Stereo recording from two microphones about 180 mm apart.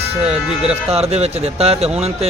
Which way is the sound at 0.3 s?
35° right (ahead or behind).